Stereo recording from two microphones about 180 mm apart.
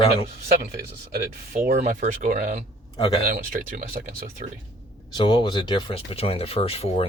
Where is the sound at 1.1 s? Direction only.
50° right (ahead or behind).